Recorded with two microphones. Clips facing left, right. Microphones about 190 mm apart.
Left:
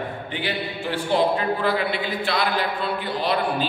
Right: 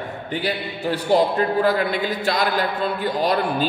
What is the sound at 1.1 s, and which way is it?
A man's voice, 45° right (ahead or behind).